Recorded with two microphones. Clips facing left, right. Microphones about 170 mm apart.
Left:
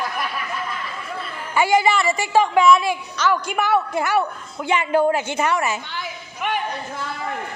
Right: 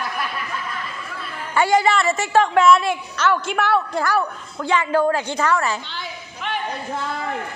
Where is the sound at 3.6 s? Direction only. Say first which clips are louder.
Even; 20° left (ahead or behind).